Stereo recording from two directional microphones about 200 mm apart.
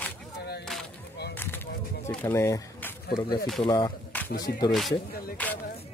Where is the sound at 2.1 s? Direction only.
10° left (ahead or behind).